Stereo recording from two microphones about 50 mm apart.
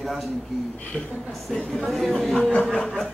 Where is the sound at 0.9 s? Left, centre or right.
Left.